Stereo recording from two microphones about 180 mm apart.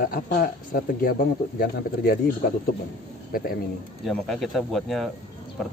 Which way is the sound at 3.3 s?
50° left (ahead or behind).